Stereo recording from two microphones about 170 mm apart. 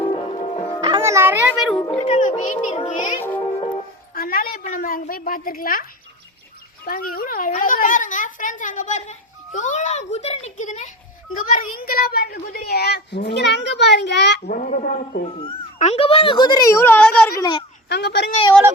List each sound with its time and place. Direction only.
0.8 s music: 30° right (ahead or behind)
1.0 s a sound: 15° right (ahead or behind)
1.9 s speech: 35° left (ahead or behind)
2.7 s music: 40° left (ahead or behind)
3.2 s speech: 10° left (ahead or behind)
3.4 s music: 30° left (ahead or behind)
4.1 s a woman's voice: 60° left (ahead or behind)
6.8 s speech: 60° left (ahead or behind)
11.5 s a woman's voice: 60° left (ahead or behind); by 14.5 s 85° left
14.5 s speech: 50° left (ahead or behind)
15.8 s a woman's voice: 35° left (ahead or behind); by 17.3 s 5° left (ahead or behind)
17.3 s a woman's voice: 25° left (ahead or behind)
17.8 s speech: 75° left (ahead or behind)